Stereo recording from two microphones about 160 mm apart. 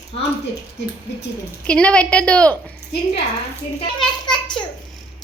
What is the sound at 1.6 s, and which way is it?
Speech, 5° left (ahead or behind).